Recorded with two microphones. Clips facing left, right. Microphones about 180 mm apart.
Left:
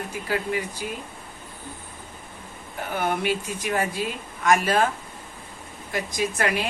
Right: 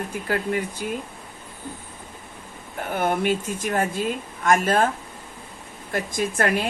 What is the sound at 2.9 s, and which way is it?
Speech, 50° right (ahead or behind).